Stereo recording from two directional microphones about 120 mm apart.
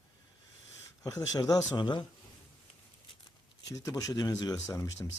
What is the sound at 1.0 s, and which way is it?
Speech, 30° left (ahead or behind).